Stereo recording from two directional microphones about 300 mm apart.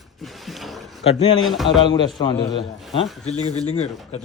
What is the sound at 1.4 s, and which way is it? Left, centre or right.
Speech, centre.